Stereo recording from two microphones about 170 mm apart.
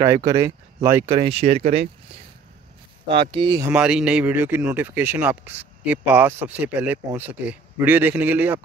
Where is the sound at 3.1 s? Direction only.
30° right (ahead or behind).